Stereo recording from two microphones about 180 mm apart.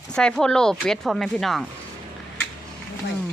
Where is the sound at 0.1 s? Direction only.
5° left (ahead or behind).